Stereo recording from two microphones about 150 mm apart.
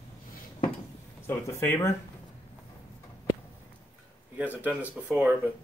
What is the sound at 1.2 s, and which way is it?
Speech, 15° left (ahead or behind).